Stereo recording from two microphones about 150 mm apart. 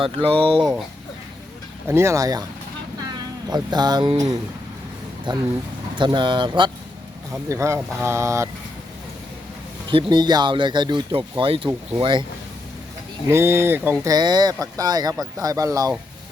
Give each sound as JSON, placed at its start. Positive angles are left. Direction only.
{"t": 0.4, "sound": "speech", "side_deg": -35}
{"t": 1.9, "sound": "speech", "side_deg": -20}
{"t": 3.4, "sound": "speech", "side_deg": -25}
{"t": 5.3, "sound": "speech", "side_deg": -30}
{"t": 7.5, "sound": "speech", "side_deg": -20}
{"t": 9.9, "sound": "speech", "side_deg": -30}
{"t": 13.2, "sound": "speech", "side_deg": -15}
{"t": 14.1, "sound": "speech", "side_deg": -30}